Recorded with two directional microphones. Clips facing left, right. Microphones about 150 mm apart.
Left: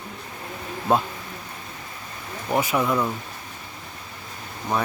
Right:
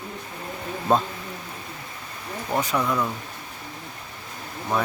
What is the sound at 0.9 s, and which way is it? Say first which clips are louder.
Speech: even; 10° left (ahead or behind).